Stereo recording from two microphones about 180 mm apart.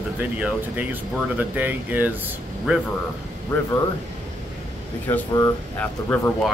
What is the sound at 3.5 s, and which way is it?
Speech, 15° left (ahead or behind).